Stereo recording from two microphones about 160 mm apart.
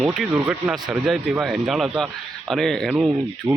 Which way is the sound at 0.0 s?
Centre (ahead or behind).